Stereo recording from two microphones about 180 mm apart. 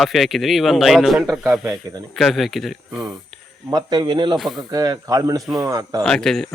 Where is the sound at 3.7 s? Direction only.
25° right (ahead or behind).